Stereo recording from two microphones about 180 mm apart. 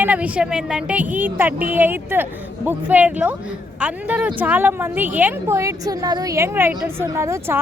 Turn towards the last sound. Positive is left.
turn(degrees=-15)  # may be behind; listen again after turning